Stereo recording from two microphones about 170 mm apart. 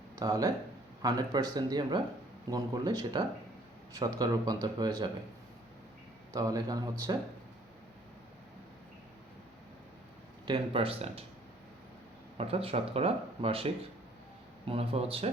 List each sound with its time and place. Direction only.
0.2 s speech: 20° right (ahead or behind)
6.3 s speech: 20° right (ahead or behind)
10.4 s speech: 30° right (ahead or behind)
12.4 s speech: 35° right (ahead or behind)
14.7 s speech: 35° right (ahead or behind)